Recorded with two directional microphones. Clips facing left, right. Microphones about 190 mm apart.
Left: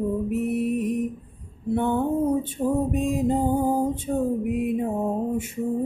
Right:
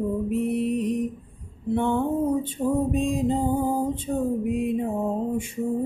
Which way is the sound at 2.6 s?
20° left (ahead or behind).